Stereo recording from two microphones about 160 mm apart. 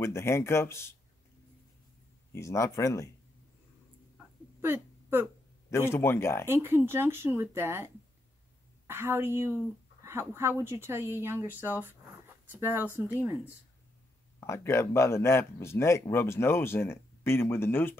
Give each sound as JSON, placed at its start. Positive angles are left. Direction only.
{"t": 0.0, "sound": "speech", "side_deg": 15}
{"t": 2.3, "sound": "speech", "side_deg": 20}
{"t": 4.6, "sound": "a sound", "side_deg": -15}
{"t": 5.7, "sound": "speech", "side_deg": 15}
{"t": 6.5, "sound": "speech", "side_deg": -15}
{"t": 14.4, "sound": "speech", "side_deg": 15}